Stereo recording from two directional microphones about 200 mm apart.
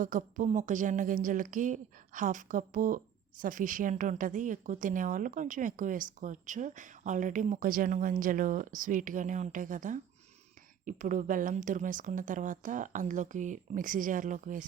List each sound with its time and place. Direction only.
0.0 s a woman's voice: 40° right (ahead or behind)